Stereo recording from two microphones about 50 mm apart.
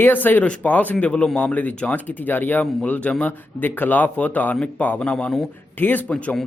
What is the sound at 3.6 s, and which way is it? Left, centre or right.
Speech, left.